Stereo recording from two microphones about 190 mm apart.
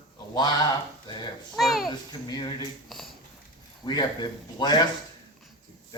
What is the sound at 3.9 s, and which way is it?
Speech, 25° left (ahead or behind).